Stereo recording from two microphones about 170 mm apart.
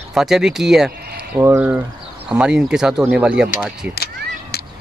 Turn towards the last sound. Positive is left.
turn(degrees=70)  # may be behind; listen again after turning